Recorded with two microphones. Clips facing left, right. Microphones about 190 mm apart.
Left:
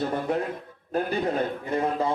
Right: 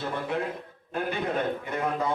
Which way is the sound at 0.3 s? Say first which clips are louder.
Left 3 dB; 40° left (ahead or behind).